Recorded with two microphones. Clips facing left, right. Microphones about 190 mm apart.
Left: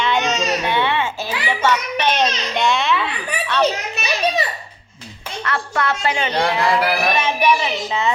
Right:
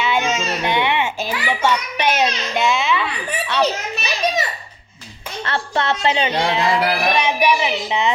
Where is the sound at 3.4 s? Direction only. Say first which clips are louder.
Left 1 dB; 10° right (ahead or behind).